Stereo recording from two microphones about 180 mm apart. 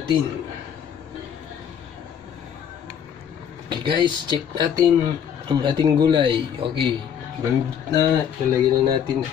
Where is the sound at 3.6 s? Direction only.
25° right (ahead or behind).